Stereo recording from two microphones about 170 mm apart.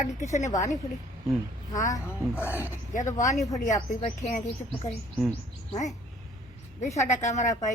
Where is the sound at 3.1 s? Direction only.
45° left (ahead or behind).